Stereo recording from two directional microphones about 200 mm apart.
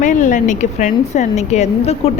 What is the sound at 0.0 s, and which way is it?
A woman's voice, 40° left (ahead or behind).